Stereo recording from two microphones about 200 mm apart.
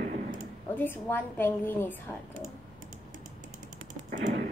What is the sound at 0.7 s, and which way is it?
A woman's voice, 10° left (ahead or behind).